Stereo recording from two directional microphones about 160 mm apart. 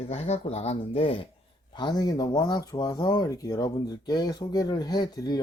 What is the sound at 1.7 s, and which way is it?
Speech, 25° left (ahead or behind).